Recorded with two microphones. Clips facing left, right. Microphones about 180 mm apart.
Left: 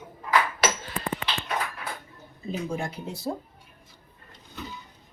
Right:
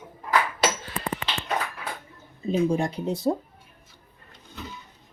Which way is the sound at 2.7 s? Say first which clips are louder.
Right 6 dB; 35° right (ahead or behind).